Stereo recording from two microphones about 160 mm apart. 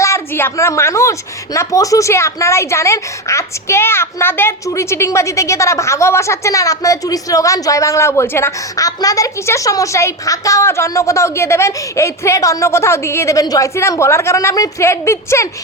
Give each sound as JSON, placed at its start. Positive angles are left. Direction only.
{"t": 0.0, "sound": "a woman's voice", "side_deg": 15}